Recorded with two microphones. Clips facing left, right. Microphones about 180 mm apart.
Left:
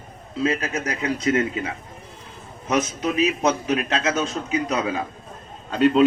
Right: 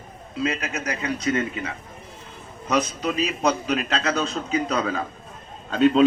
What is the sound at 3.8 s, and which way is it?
A man's voice, 5° left (ahead or behind).